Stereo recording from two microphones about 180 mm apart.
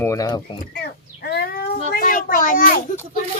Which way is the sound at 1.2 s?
60° left (ahead or behind).